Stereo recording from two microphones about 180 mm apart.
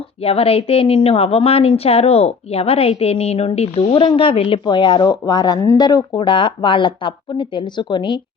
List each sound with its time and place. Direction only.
0.2 s a woman's voice: 35° left (ahead or behind)